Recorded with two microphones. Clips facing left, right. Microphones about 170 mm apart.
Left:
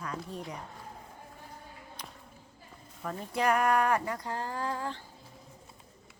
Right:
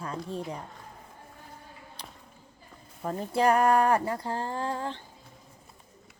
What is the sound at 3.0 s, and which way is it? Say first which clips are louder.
Speech: right 5 dB; 30° right (ahead or behind).